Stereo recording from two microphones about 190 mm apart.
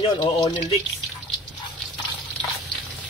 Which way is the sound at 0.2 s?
25° left (ahead or behind).